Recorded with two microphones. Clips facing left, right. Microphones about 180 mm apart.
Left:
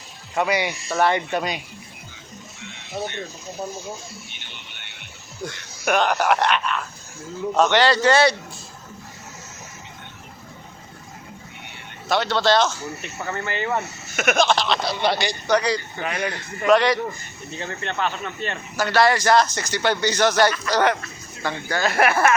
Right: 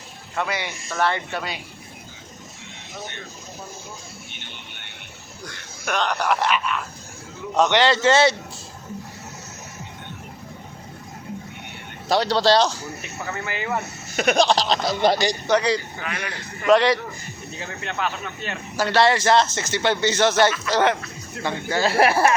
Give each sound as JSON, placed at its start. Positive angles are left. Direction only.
{"t": 0.3, "sound": "a man's voice", "side_deg": 15}
{"t": 5.8, "sound": "speech", "side_deg": 10}
{"t": 7.5, "sound": "speech", "side_deg": -20}
{"t": 12.0, "sound": "speech", "side_deg": -35}
{"t": 13.0, "sound": "speech", "side_deg": -5}
{"t": 14.2, "sound": "speech", "side_deg": -35}
{"t": 15.4, "sound": "speech", "side_deg": -25}
{"t": 16.0, "sound": "a man's voice", "side_deg": 25}
{"t": 16.6, "sound": "speech", "side_deg": -30}
{"t": 17.6, "sound": "speech", "side_deg": -5}
{"t": 18.8, "sound": "speech", "side_deg": -30}